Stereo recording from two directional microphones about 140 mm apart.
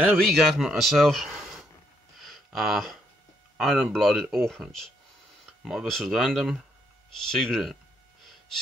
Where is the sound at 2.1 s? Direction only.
Centre (ahead or behind).